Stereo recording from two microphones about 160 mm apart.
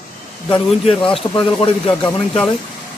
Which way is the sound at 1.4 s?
35° left (ahead or behind).